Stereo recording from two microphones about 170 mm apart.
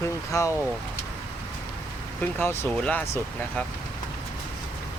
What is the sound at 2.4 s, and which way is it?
Speech, 10° left (ahead or behind).